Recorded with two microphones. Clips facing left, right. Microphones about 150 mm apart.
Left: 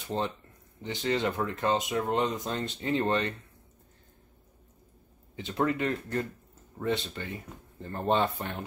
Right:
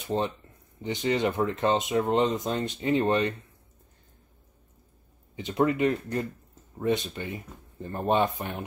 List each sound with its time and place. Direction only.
0.1 s speech: 15° right (ahead or behind)
5.3 s speech: 15° right (ahead or behind)